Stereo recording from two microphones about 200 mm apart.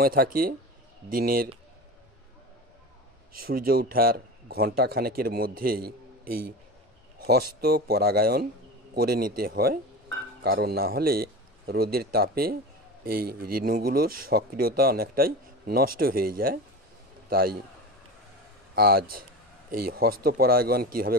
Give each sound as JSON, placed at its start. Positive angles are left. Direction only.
{"t": 0.0, "sound": "speech", "side_deg": -45}
{"t": 3.4, "sound": "a man's voice", "side_deg": -45}
{"t": 18.8, "sound": "speech", "side_deg": -50}